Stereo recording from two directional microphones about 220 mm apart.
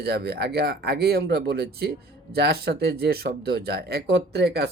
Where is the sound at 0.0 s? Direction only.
45° right (ahead or behind).